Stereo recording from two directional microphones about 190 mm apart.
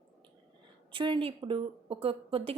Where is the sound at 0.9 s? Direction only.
25° right (ahead or behind).